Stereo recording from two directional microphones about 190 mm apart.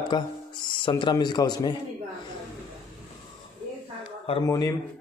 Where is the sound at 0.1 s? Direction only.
25° left (ahead or behind).